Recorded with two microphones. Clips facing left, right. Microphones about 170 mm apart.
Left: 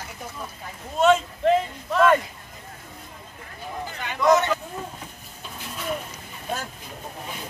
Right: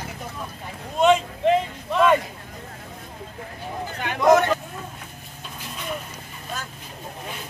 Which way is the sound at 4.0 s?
55° right (ahead or behind).